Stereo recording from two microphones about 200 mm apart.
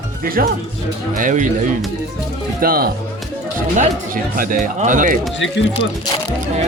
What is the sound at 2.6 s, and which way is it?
Speech, 45° right (ahead or behind).